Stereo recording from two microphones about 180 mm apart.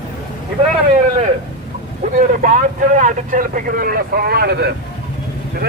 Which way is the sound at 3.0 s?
45° right (ahead or behind).